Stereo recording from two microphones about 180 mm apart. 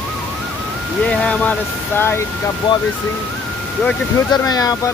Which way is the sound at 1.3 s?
10° left (ahead or behind).